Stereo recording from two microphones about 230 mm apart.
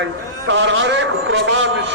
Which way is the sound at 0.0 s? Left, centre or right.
Right.